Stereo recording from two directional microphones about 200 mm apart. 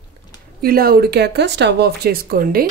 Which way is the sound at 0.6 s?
50° right (ahead or behind).